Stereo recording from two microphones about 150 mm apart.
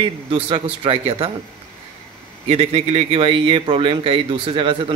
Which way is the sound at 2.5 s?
45° right (ahead or behind).